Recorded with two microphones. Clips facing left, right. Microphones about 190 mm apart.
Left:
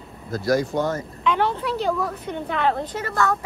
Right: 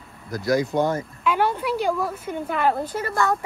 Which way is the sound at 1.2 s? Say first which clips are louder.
Left 1 dB; 5° right (ahead or behind).